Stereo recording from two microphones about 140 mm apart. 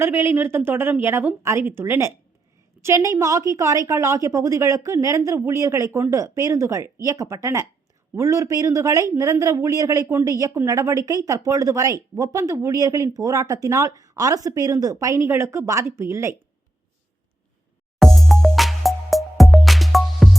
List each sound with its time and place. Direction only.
0.0 s a woman's voice: 15° right (ahead or behind)
18.0 s music: centre (ahead or behind)